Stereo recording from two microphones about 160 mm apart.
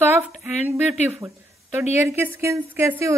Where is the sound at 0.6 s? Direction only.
10° right (ahead or behind).